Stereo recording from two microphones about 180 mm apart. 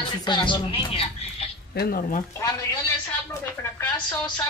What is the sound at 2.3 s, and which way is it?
Speech, 15° left (ahead or behind).